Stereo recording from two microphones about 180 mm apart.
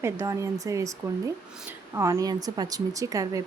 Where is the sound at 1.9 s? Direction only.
20° right (ahead or behind).